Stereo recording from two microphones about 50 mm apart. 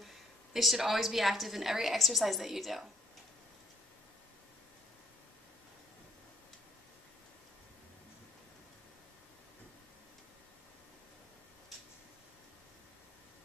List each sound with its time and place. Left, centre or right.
0.0 s a woman's voice: centre